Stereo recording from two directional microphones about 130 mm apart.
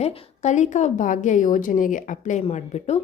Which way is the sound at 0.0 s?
65° left (ahead or behind).